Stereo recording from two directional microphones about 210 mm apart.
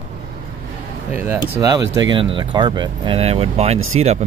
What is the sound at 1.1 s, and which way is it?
Speech, 10° right (ahead or behind).